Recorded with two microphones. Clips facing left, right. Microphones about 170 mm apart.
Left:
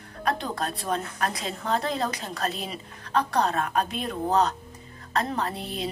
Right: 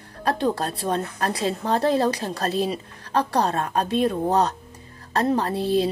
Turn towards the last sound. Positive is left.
turn(degrees=-30)  # may be behind; listen again after turning